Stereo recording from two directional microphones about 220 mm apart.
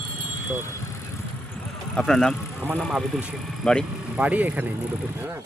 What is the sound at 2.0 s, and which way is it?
Speech, centre (ahead or behind).